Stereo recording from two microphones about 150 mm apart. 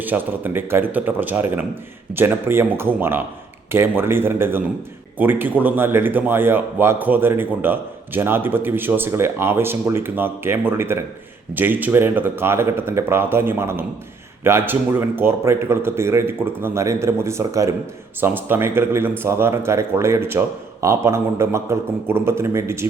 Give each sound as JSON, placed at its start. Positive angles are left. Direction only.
{"t": 0.0, "sound": "speech", "side_deg": -10}